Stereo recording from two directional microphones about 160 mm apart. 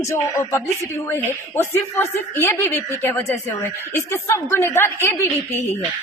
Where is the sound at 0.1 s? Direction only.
15° left (ahead or behind).